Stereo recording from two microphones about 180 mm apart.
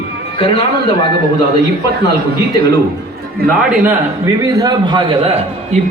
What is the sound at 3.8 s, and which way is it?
A man's voice, 15° right (ahead or behind).